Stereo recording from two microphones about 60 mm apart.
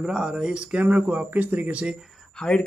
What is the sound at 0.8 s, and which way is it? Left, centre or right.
Speech, right.